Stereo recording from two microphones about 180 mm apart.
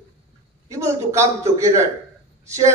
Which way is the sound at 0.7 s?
15° right (ahead or behind).